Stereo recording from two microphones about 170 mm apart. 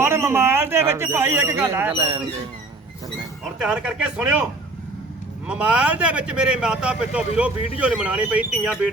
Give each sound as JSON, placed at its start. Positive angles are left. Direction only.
{"t": 0.0, "sound": "a man's voice", "side_deg": -15}
{"t": 1.9, "sound": "speech", "side_deg": -35}
{"t": 3.6, "sound": "speech", "side_deg": -5}
{"t": 5.5, "sound": "a man's voice", "side_deg": -5}